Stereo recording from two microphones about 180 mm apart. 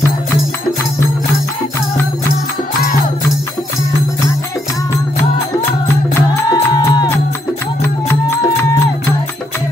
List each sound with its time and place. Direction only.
5.7 s music: 15° left (ahead or behind)